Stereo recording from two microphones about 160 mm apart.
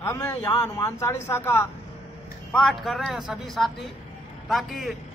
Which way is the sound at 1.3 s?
10° left (ahead or behind).